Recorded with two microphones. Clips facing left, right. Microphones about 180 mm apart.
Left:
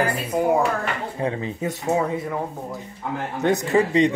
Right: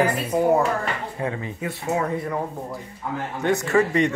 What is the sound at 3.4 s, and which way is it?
Speech, 15° left (ahead or behind).